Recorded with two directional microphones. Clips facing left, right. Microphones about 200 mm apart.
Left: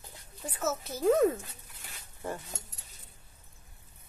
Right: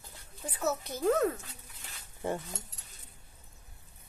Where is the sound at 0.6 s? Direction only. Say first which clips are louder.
Even; 5° left (ahead or behind).